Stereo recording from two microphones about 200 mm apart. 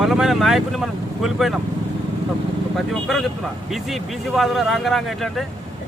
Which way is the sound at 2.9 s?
Centre (ahead or behind).